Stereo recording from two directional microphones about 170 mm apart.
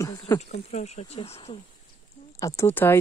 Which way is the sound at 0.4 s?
40° left (ahead or behind).